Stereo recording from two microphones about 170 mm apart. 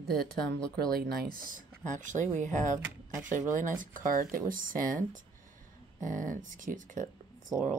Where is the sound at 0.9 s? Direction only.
55° right (ahead or behind).